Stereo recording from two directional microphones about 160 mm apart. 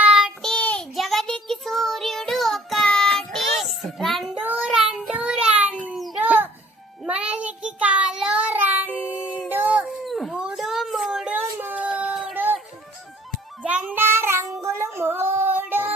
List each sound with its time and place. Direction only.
0.0 s child singing: 5° right (ahead or behind)
6.2 s music: 10° right (ahead or behind)
7.0 s child singing: 5° right (ahead or behind)
8.9 s child singing: 10° left (ahead or behind)
9.5 s a sound: 10° right (ahead or behind)
13.6 s child singing: 10° right (ahead or behind)